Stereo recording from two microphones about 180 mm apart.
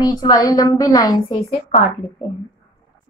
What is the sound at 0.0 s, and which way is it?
A woman's voice, 20° left (ahead or behind).